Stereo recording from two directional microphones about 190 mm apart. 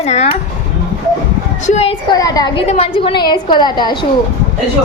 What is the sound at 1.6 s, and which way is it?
Speech, 35° left (ahead or behind).